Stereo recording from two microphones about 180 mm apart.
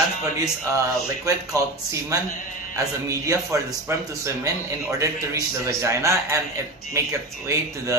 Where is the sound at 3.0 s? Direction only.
15° right (ahead or behind).